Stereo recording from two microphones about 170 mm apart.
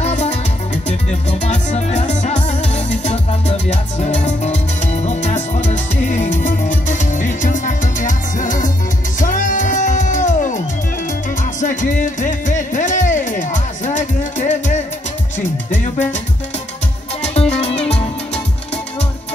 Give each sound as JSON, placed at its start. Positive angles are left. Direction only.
{"t": 0.0, "sound": "music", "side_deg": 40}
{"t": 1.4, "sound": "music", "side_deg": 45}
{"t": 11.6, "sound": "music", "side_deg": 50}
{"t": 17.2, "sound": "music", "side_deg": 40}